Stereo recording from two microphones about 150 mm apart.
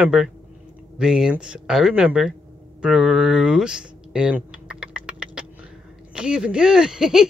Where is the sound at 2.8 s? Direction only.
5° right (ahead or behind).